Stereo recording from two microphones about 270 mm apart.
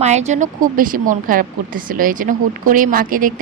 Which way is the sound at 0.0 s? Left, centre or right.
Right.